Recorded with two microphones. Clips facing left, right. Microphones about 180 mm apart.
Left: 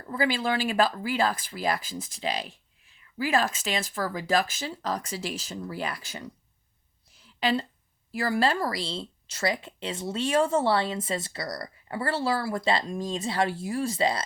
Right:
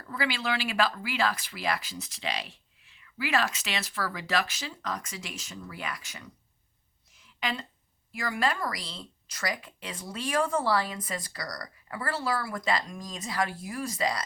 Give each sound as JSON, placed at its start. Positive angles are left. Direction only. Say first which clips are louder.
{"t": 0.2, "sound": "speech", "louder": "left 5 dB", "side_deg": 45}
{"t": 7.1, "sound": "a sound", "louder": "left 8 dB", "side_deg": 30}
{"t": 8.1, "sound": "speech", "louder": "left 5 dB", "side_deg": 35}